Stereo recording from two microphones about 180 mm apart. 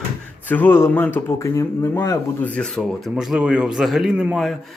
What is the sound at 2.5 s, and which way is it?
Speech, 5° left (ahead or behind).